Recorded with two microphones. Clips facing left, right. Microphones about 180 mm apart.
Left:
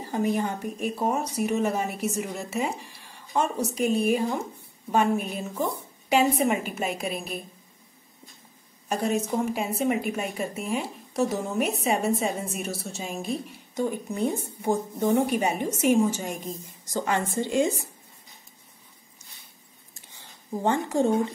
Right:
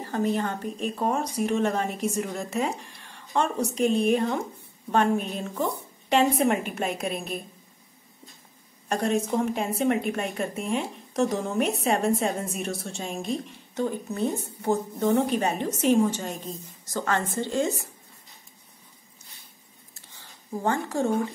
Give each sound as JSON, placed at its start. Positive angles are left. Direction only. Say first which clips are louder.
{"t": 0.0, "sound": "a woman's voice", "louder": "even", "side_deg": 10}
{"t": 8.8, "sound": "a woman's voice", "louder": "right 1 dB", "side_deg": 5}
{"t": 19.9, "sound": "a sound", "louder": "left 1 dB", "side_deg": 15}